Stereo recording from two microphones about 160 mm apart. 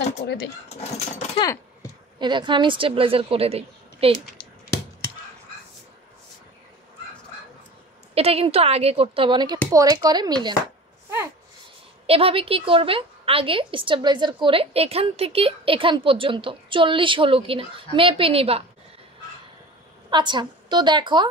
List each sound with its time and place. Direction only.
0.7 s speech: 40° left (ahead or behind)
1.4 s speech: 20° left (ahead or behind)
2.1 s a woman's voice: 30° right (ahead or behind)
8.1 s a woman's voice: 40° right (ahead or behind)
12.1 s a woman's voice: 35° right (ahead or behind)
20.1 s a woman's voice: 30° right (ahead or behind)